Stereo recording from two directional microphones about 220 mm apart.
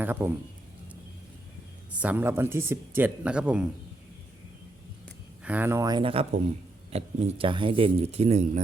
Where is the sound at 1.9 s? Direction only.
5° right (ahead or behind).